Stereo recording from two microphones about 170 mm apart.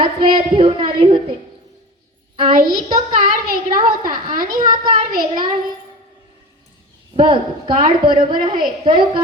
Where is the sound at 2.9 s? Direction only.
55° right (ahead or behind).